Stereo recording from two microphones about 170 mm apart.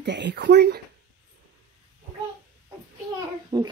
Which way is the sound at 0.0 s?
90° right.